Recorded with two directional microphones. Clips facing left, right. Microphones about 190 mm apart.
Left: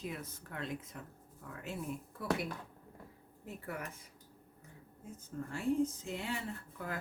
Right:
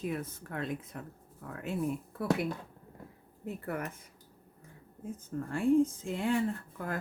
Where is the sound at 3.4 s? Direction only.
55° right (ahead or behind).